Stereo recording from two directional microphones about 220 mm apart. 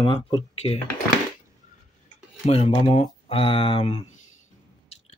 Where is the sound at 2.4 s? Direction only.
25° left (ahead or behind).